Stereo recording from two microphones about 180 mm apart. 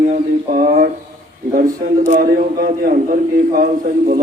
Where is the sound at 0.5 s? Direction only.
50° right (ahead or behind).